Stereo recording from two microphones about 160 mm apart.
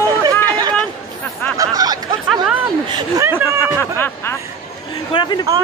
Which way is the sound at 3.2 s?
15° right (ahead or behind).